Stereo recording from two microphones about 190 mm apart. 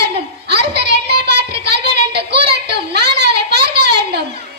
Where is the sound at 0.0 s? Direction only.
60° right (ahead or behind).